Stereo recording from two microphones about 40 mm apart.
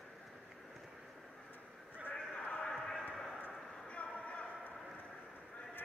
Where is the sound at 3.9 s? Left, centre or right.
Left.